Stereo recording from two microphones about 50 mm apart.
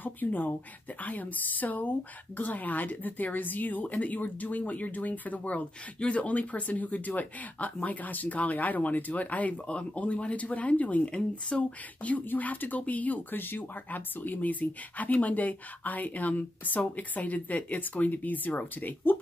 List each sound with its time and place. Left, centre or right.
0.0 s speech: left
11.1 s speech: centre
12.0 s speech: left